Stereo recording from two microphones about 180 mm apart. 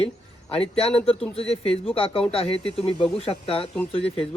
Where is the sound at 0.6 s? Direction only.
30° left (ahead or behind).